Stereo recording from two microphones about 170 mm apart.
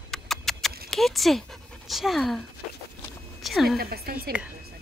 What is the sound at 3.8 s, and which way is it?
Speech, 65° right (ahead or behind).